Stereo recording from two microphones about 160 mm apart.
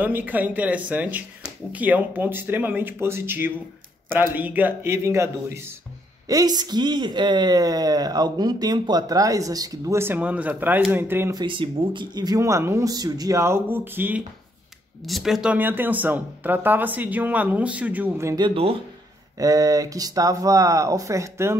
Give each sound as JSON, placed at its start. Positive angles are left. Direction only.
{"t": 0.0, "sound": "speech", "side_deg": -10}
{"t": 11.3, "sound": "speech", "side_deg": -30}
{"t": 15.0, "sound": "speech", "side_deg": 0}
{"t": 19.3, "sound": "speech", "side_deg": -20}